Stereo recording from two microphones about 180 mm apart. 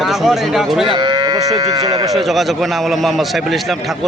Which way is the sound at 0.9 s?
25° right (ahead or behind).